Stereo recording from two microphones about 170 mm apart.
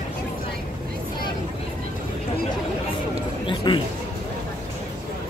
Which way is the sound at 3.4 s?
30° left (ahead or behind).